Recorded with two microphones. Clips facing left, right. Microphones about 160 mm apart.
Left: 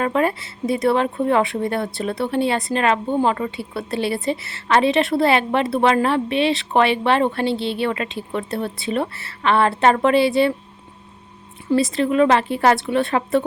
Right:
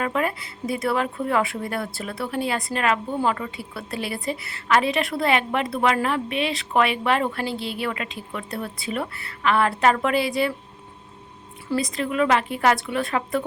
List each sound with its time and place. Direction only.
0.0 s speech: 30° left (ahead or behind)
11.8 s speech: 30° left (ahead or behind)